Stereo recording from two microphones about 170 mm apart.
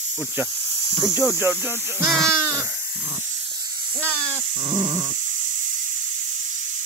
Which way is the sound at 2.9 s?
5° right (ahead or behind).